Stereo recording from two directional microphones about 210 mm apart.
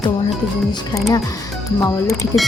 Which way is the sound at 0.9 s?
15° left (ahead or behind).